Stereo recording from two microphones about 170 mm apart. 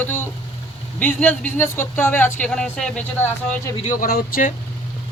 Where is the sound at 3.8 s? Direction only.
50° left (ahead or behind).